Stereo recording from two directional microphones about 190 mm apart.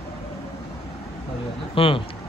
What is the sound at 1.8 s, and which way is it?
Speech, 30° left (ahead or behind).